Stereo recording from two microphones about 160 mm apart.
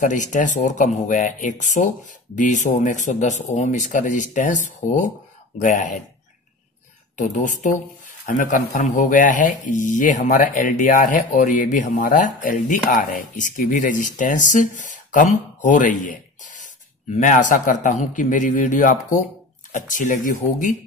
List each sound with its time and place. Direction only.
0.0 s speech: 50° left (ahead or behind)
7.2 s a man's voice: 50° left (ahead or behind)